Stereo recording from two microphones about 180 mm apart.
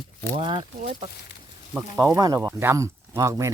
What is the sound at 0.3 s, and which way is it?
Speech, 25° right (ahead or behind).